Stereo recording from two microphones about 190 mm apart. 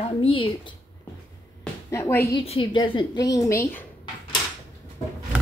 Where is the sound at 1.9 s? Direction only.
15° left (ahead or behind).